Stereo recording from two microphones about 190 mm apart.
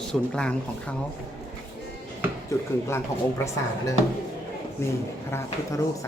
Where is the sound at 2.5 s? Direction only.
15° left (ahead or behind).